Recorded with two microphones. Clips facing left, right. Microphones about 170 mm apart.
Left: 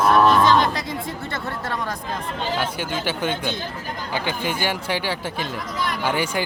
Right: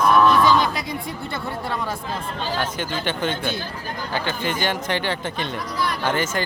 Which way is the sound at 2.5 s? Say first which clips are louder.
Even; 10° left (ahead or behind).